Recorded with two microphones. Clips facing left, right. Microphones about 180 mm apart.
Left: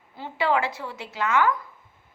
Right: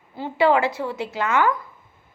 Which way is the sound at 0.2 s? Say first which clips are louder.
Right 6 dB; 50° right (ahead or behind).